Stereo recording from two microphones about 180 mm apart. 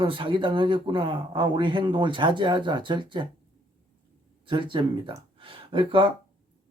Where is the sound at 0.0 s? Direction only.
30° right (ahead or behind).